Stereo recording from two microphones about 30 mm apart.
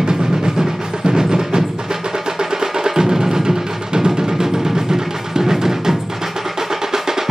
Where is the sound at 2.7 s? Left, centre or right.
Centre.